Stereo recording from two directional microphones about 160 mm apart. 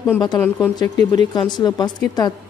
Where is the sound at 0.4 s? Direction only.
20° left (ahead or behind).